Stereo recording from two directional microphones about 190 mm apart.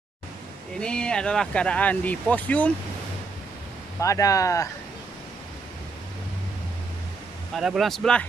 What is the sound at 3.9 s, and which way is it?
Speech, 15° left (ahead or behind).